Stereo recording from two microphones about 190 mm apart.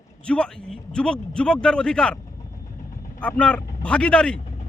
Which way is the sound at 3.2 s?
5° left (ahead or behind).